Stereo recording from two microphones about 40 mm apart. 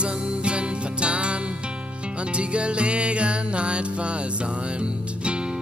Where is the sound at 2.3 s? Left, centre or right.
Right.